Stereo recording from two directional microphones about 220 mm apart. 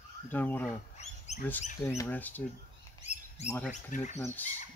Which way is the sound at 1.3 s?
30° left (ahead or behind).